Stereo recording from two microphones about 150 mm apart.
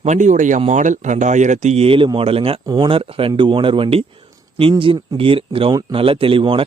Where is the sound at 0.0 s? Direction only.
50° right (ahead or behind).